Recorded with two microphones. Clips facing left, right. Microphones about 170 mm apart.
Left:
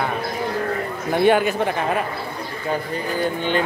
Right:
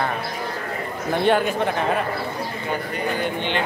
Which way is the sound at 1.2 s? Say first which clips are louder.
Left 3 dB; 5° left (ahead or behind).